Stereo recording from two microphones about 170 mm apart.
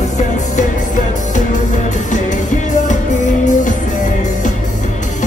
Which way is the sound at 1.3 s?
45° left (ahead or behind).